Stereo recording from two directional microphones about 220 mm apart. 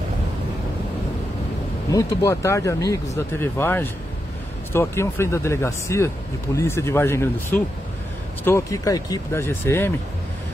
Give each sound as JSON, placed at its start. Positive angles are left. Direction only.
{"t": 1.9, "sound": "speech", "side_deg": 15}